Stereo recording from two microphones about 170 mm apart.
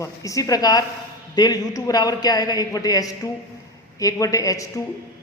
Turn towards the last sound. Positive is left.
turn(degrees=20)  # may be behind; listen again after turning